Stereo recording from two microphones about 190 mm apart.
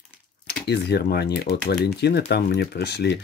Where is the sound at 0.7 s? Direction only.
60° left (ahead or behind).